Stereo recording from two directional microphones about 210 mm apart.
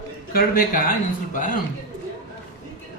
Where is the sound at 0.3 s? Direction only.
40° left (ahead or behind).